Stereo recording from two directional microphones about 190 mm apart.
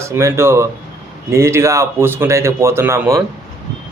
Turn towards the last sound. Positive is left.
turn(degrees=-15)  # may be behind; listen again after turning